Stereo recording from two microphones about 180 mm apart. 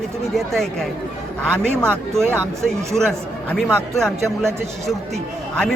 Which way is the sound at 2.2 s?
15° right (ahead or behind).